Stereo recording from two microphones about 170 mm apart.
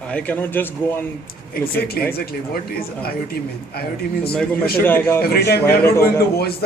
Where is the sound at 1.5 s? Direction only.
60° left (ahead or behind).